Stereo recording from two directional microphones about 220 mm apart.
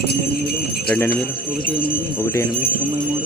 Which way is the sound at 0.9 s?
10° left (ahead or behind).